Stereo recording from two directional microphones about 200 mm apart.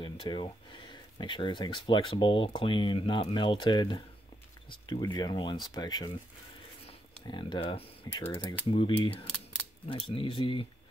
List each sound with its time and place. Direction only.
0.0 s speech: 25° left (ahead or behind)
6.9 s a sound: 25° left (ahead or behind)
8.3 s speech: 25° left (ahead or behind)